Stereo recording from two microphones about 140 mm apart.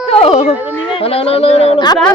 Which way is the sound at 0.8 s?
40° left (ahead or behind).